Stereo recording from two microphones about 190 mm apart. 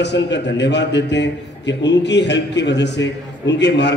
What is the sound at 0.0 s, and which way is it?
A man's voice, 65° left (ahead or behind).